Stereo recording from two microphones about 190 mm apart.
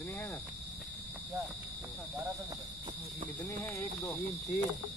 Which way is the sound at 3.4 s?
10° left (ahead or behind).